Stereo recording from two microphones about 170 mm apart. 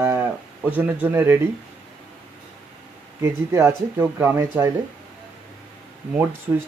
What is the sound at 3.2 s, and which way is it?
Speech, 15° right (ahead or behind).